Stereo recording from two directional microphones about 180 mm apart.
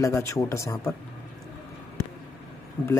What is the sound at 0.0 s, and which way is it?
Speech, 15° left (ahead or behind).